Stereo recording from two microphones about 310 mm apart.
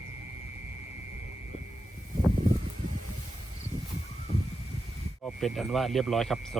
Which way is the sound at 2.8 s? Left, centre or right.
Right.